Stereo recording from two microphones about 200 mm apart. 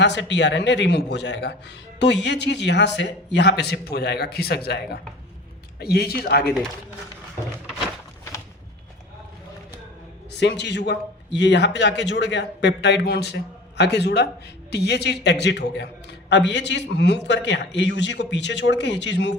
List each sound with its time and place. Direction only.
0.0 s a man's voice: 60° left (ahead or behind)
10.4 s a man's voice: 60° left (ahead or behind)